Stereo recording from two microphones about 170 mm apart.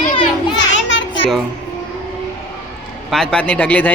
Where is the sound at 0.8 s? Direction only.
90° left.